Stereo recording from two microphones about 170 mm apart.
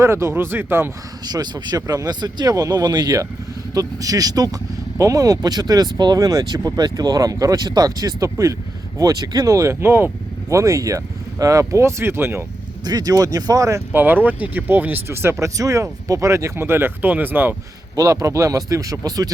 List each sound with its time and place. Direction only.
0.0 s speech: 15° right (ahead or behind)
1.2 s speech: 25° right (ahead or behind)